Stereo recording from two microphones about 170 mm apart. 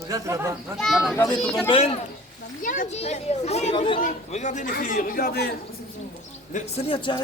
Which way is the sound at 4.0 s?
45° left (ahead or behind).